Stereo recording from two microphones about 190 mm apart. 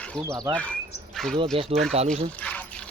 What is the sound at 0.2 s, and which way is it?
Speech, 15° right (ahead or behind).